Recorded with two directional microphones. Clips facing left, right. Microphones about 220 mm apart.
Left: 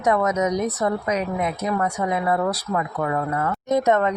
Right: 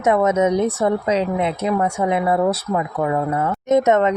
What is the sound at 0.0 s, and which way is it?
A woman's voice, 25° right (ahead or behind).